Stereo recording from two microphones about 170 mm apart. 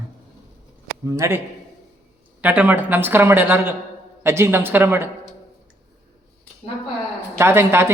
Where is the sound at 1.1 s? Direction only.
15° right (ahead or behind).